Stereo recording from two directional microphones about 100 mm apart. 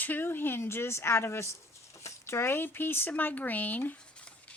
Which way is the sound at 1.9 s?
30° left (ahead or behind).